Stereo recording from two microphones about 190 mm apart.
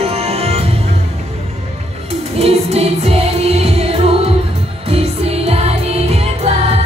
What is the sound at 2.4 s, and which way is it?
Music, 30° right (ahead or behind).